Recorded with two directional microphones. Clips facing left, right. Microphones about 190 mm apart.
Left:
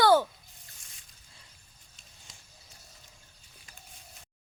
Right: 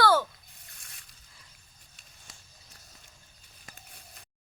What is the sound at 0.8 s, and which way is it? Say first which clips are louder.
Zipper: right 2 dB; 65° right (ahead or behind).